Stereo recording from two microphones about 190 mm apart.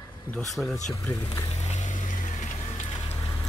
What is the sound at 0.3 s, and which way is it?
Speech, centre (ahead or behind).